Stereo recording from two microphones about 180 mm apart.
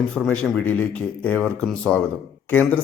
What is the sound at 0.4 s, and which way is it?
A man's voice, 5° left (ahead or behind).